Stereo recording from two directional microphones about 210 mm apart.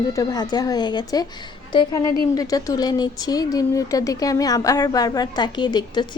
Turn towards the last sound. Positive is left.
turn(degrees=20)  # may be behind; listen again after turning